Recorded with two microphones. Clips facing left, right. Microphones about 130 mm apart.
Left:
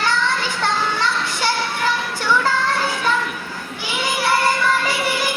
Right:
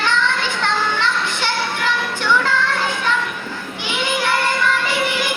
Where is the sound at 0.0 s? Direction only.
40° left (ahead or behind).